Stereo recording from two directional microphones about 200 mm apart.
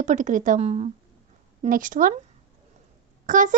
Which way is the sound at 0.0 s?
40° right (ahead or behind).